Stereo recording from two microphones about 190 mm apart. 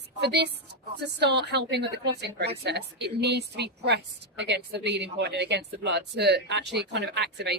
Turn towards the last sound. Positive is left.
turn(degrees=-60)  # may be behind; listen again after turning